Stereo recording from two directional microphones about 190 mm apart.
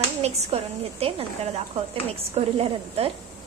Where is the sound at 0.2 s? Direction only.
30° right (ahead or behind).